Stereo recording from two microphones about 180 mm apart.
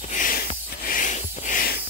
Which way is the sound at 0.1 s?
50° left (ahead or behind).